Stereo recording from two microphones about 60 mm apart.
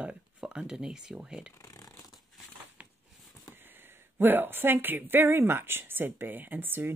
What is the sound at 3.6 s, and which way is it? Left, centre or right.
Speech, right.